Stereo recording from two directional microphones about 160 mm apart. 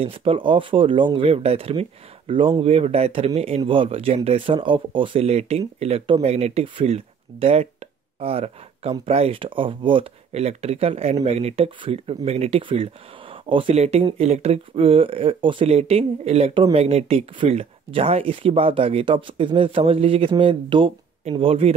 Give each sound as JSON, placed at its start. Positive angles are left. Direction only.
{"t": 0.0, "sound": "speech", "side_deg": -35}